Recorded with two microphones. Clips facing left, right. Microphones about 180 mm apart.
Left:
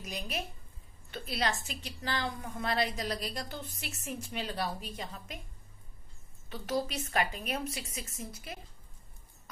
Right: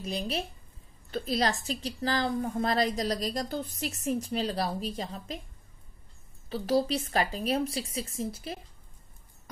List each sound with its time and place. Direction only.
0.0 s a woman's voice: 30° right (ahead or behind)
6.5 s a woman's voice: 30° right (ahead or behind)